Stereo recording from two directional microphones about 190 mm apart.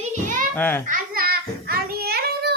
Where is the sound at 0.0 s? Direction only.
40° right (ahead or behind).